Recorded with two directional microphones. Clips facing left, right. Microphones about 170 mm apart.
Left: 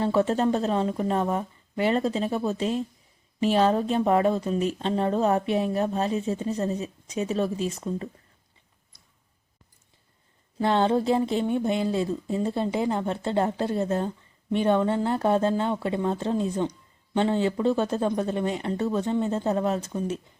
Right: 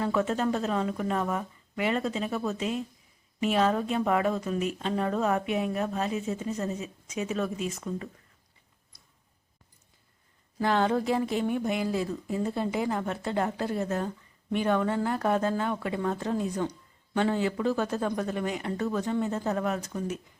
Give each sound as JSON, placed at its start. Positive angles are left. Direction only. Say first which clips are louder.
{"t": 0.0, "sound": "speech", "louder": "left 4 dB", "side_deg": 30}
{"t": 10.6, "sound": "speech", "louder": "left 3 dB", "side_deg": 30}